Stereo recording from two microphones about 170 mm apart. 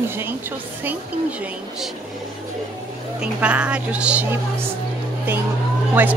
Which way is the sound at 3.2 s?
5° right (ahead or behind).